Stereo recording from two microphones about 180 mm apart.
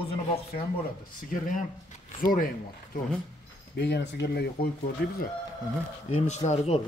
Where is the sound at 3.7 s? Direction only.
65° left (ahead or behind).